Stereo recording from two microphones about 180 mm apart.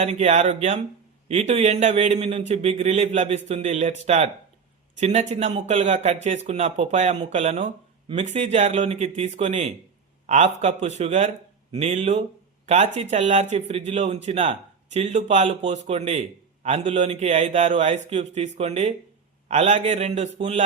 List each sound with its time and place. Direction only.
0.0 s speech: 35° right (ahead or behind)